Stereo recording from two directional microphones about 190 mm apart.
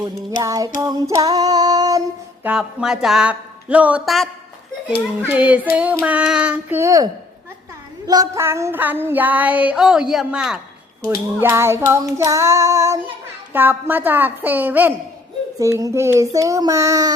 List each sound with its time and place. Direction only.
0.4 s female singing: 20° right (ahead or behind)
2.5 s a woman's voice: 5° right (ahead or behind)
5.3 s female singing: 10° right (ahead or behind)
11.0 s female singing: 15° right (ahead or behind)